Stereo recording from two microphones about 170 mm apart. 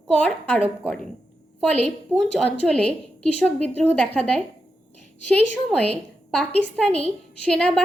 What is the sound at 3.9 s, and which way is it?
A woman's voice, 5° left (ahead or behind).